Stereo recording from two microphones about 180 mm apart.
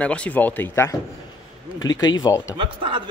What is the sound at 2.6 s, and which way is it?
Speech, 30° right (ahead or behind).